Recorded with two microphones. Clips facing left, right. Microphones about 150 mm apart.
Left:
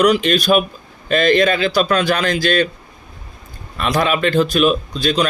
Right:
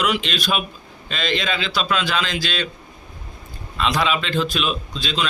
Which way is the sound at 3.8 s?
50° left (ahead or behind).